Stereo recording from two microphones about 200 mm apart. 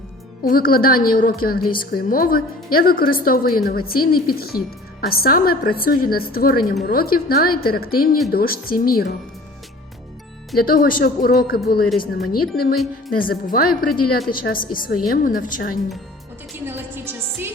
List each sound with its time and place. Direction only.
0.4 s a woman's voice: 45° left (ahead or behind)
10.6 s a woman's voice: 45° left (ahead or behind)
12.5 s speech: centre (ahead or behind)
13.1 s a woman's voice: 45° left (ahead or behind)
16.6 s music: 10° right (ahead or behind)